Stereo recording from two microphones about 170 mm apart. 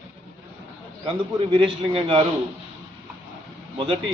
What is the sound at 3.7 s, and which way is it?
Speech, 35° right (ahead or behind).